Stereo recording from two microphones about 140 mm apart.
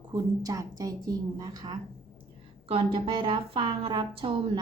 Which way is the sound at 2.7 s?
40° right (ahead or behind).